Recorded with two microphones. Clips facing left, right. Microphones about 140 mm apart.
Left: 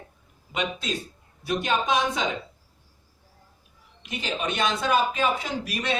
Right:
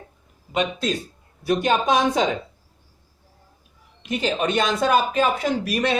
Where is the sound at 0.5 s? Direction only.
45° right (ahead or behind).